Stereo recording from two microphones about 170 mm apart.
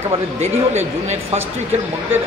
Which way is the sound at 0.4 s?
40° right (ahead or behind).